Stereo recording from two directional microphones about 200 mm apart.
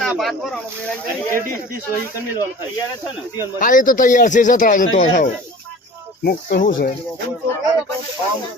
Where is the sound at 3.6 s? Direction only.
40° left (ahead or behind).